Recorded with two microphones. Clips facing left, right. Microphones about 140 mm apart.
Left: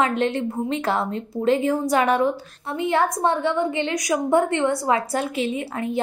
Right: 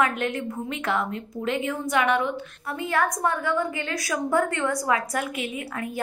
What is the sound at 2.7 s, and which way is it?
A woman's voice, 25° left (ahead or behind).